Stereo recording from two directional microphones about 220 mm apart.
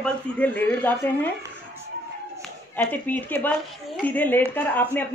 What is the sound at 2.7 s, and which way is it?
Speech, 5° left (ahead or behind).